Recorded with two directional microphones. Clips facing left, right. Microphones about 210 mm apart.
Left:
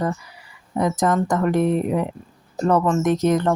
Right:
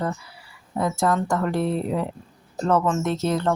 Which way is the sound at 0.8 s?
20° left (ahead or behind).